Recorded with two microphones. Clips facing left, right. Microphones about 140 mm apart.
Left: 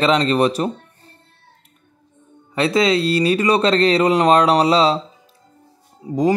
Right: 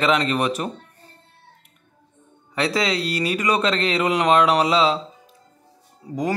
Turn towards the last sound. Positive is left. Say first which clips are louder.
# left 6 dB
turn(degrees=20)  # may be behind; listen again after turning